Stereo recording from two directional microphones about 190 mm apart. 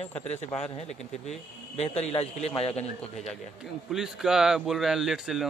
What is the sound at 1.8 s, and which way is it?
Speech, 35° left (ahead or behind).